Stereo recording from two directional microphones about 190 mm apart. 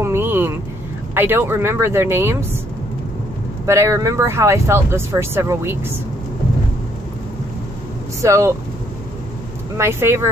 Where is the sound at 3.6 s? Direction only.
15° right (ahead or behind).